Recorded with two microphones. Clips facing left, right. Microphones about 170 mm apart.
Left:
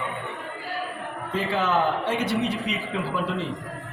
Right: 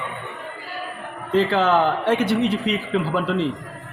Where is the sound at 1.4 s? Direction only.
70° right (ahead or behind).